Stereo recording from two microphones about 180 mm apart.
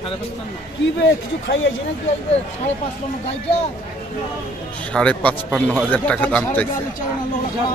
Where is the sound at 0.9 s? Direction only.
80° left.